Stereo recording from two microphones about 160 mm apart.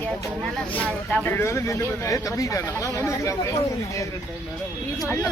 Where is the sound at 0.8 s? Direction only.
10° left (ahead or behind).